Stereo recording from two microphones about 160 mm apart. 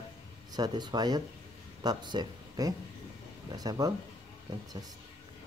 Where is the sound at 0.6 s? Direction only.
25° right (ahead or behind).